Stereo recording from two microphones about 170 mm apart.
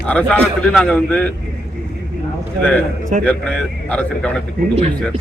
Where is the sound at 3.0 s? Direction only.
50° right (ahead or behind).